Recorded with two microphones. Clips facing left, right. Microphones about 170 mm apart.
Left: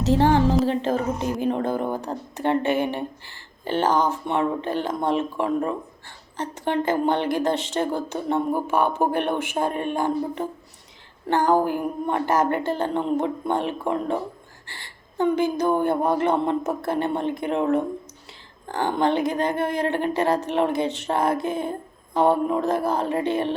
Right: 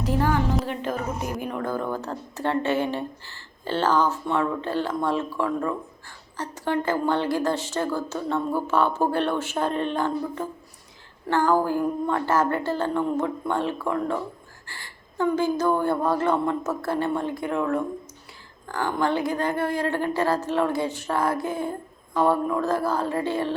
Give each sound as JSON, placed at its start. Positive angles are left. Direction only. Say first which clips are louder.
{"t": 0.1, "sound": "a woman's voice", "louder": "left 6 dB", "side_deg": 30}